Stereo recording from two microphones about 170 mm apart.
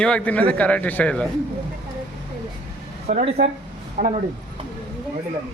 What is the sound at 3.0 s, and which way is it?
Speech, 40° right (ahead or behind).